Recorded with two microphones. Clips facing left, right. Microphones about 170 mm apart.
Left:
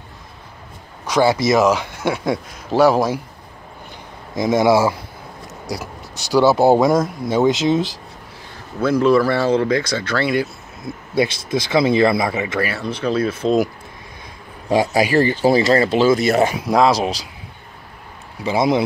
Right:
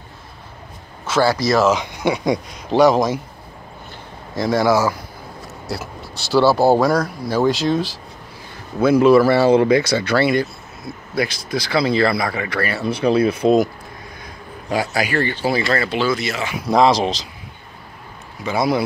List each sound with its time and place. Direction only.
1.0 s speech: 20° left (ahead or behind)
1.8 s speech: 5° left (ahead or behind)
4.4 s speech: 20° left (ahead or behind)
6.3 s speech: 20° left (ahead or behind)
8.8 s speech: 5° right (ahead or behind)
11.1 s speech: 25° left (ahead or behind)
12.6 s speech: 5° right (ahead or behind)
15.0 s speech: 35° left (ahead or behind)
16.7 s speech: 5° left (ahead or behind)
18.4 s speech: 25° left (ahead or behind)